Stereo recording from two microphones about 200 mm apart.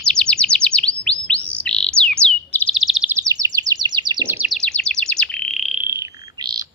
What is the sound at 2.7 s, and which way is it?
Chirp, centre (ahead or behind).